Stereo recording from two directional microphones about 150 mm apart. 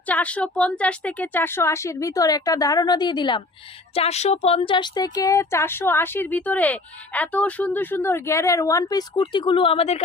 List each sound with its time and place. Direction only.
0.1 s speech: 10° left (ahead or behind); by 3.4 s 30° left (ahead or behind)
3.9 s speech: 45° left (ahead or behind)